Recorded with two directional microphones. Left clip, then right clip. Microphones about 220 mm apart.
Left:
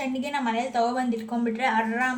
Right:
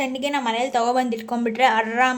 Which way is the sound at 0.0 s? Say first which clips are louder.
Right 5 dB; 45° right (ahead or behind).